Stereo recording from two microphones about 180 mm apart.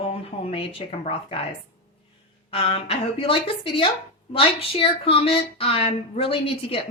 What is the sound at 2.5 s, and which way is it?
Speech, 30° left (ahead or behind).